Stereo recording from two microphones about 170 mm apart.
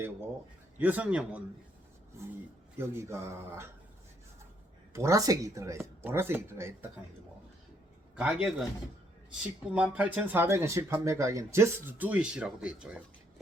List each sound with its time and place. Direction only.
0.8 s speech: 10° right (ahead or behind)
2.7 s speech: 15° right (ahead or behind)
4.9 s speech: 20° right (ahead or behind)
8.1 s a man's voice: 5° right (ahead or behind)
9.7 s speech: 5° right (ahead or behind)